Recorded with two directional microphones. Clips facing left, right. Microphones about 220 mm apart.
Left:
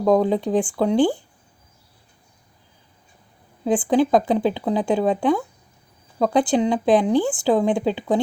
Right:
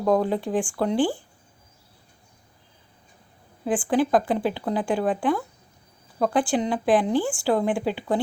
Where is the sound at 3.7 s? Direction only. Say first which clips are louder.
Left 4 dB; 20° left (ahead or behind).